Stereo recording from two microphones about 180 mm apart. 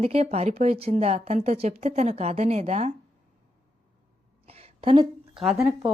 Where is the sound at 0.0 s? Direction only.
35° right (ahead or behind).